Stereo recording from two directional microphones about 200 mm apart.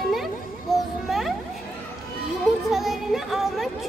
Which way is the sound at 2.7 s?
Centre (ahead or behind).